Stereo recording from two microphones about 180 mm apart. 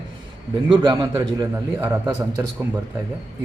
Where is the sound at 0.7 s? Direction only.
25° right (ahead or behind).